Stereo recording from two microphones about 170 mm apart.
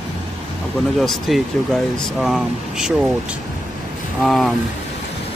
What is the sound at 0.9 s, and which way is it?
Speech, centre (ahead or behind).